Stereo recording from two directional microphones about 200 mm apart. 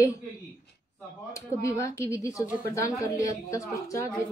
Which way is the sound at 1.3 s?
15° left (ahead or behind).